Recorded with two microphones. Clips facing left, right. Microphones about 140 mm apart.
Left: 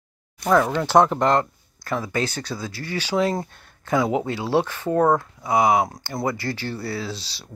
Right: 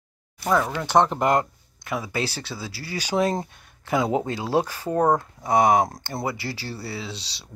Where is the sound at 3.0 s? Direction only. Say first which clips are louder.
Left 1 dB; 20° right (ahead or behind).